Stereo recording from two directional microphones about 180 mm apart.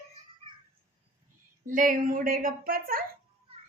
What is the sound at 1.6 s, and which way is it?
A child's voice, 50° right (ahead or behind).